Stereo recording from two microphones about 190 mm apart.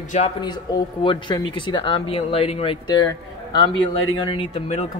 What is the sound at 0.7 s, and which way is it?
Speech, 20° left (ahead or behind).